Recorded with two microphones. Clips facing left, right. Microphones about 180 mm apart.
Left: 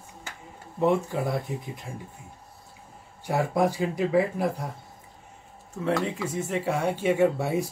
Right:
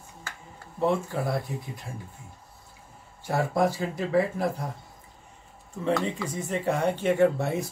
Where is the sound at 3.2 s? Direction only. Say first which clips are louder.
Left 1 dB; 15° left (ahead or behind).